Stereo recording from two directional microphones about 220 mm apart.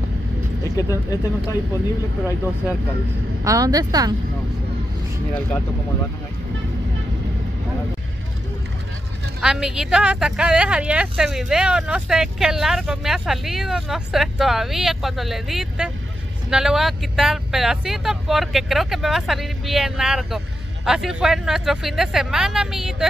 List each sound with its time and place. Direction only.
0.7 s speech: 15° left (ahead or behind)
3.4 s a woman's voice: 15° right (ahead or behind)
9.4 s speech: 5° right (ahead or behind)